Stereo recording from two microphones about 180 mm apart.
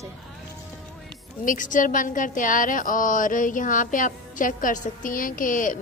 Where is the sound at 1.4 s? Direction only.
45° left (ahead or behind).